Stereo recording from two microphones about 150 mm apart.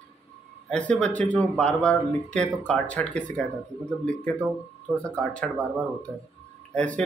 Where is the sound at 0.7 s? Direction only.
5° left (ahead or behind).